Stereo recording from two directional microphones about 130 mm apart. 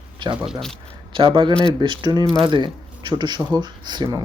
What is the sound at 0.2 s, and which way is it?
Speech, 40° right (ahead or behind).